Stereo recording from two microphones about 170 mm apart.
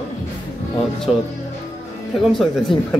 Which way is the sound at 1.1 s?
5° right (ahead or behind).